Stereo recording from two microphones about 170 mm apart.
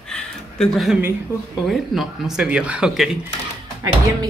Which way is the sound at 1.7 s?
Centre (ahead or behind).